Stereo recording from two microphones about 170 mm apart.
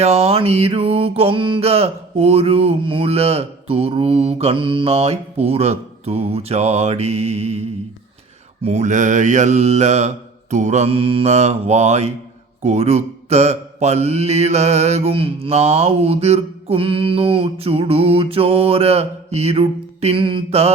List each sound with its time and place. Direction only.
0.0 s mantra: 35° right (ahead or behind)
8.6 s speech: 40° right (ahead or behind)
10.5 s mantra: 45° right (ahead or behind)